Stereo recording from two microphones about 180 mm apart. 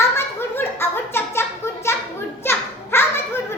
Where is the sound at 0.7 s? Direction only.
15° left (ahead or behind).